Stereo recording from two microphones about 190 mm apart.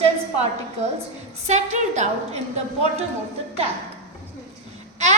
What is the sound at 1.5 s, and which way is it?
Speech, 40° right (ahead or behind).